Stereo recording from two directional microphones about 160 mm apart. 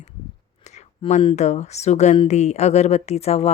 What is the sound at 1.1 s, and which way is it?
Speech, 45° left (ahead or behind).